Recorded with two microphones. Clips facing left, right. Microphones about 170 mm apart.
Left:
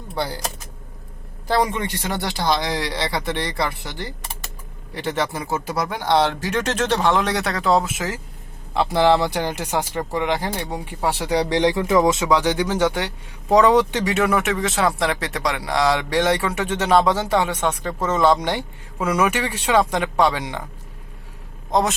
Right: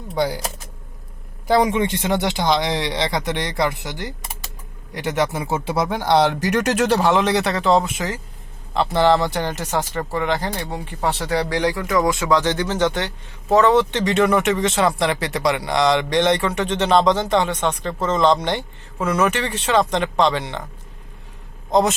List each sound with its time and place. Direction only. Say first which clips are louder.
0.2 s a man's voice: right 5 dB; 15° right (ahead or behind)
1.5 s a man's voice: right 4 dB; 20° right (ahead or behind)
5.5 s speech: right 3 dB; 25° right (ahead or behind)
6.0 s speech: right 1 dB; 15° right (ahead or behind); by 20.7 s 10° left (ahead or behind)
21.7 s a man's voice: right 3 dB; centre (ahead or behind)